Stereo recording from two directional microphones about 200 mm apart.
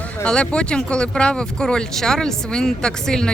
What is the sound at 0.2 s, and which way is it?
Speech, 5° left (ahead or behind).